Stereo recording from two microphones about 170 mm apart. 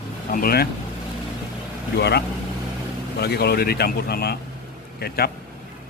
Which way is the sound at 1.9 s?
75° left (ahead or behind).